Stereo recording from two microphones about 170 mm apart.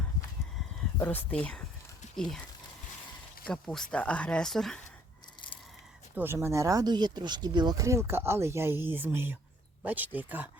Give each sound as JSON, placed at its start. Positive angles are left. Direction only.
{"t": 0.9, "sound": "speech", "side_deg": 10}
{"t": 3.4, "sound": "speech", "side_deg": 5}
{"t": 5.4, "sound": "a sound", "side_deg": 25}
{"t": 6.1, "sound": "speech", "side_deg": -15}